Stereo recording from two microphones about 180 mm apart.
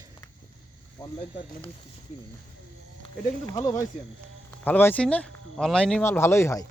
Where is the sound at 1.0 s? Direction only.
20° left (ahead or behind).